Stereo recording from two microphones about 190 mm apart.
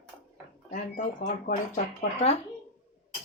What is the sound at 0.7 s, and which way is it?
Speech, 45° left (ahead or behind).